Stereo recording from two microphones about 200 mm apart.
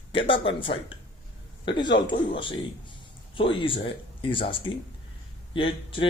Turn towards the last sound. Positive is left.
turn(degrees=25)  # may be behind; listen again after turning